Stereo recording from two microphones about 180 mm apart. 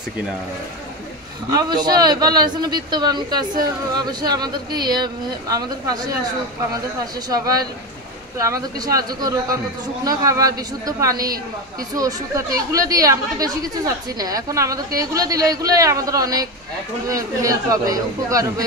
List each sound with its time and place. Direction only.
1.5 s a woman's voice: 25° right (ahead or behind)
7.2 s a woman's voice: 20° right (ahead or behind)